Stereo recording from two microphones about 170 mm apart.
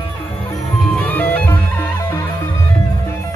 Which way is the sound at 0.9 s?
10° left (ahead or behind).